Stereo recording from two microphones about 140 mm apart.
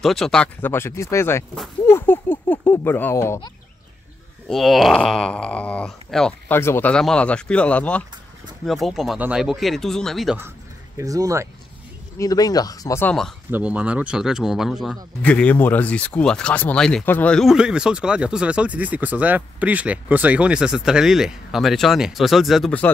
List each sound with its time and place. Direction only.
0.0 s speech: 5° left (ahead or behind)
4.5 s speech: centre (ahead or behind)
6.5 s speech: 15° left (ahead or behind)
11.0 s speech: 25° right (ahead or behind)
12.2 s speech: 25° left (ahead or behind)
13.0 s speech: 5° left (ahead or behind)
13.5 s speech: 10° right (ahead or behind)
15.2 s speech: 10° left (ahead or behind)